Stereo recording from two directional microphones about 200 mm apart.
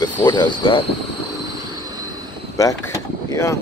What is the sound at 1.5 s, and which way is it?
Train, 20° right (ahead or behind).